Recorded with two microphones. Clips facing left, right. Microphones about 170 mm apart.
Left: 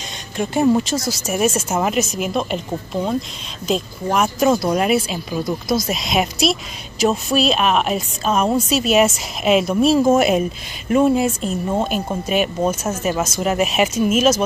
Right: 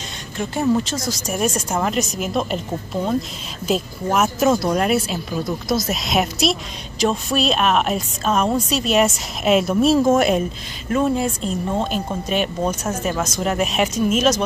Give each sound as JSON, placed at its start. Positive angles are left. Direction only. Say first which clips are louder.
{"t": 0.4, "sound": "speech", "louder": "left 3 dB", "side_deg": 15}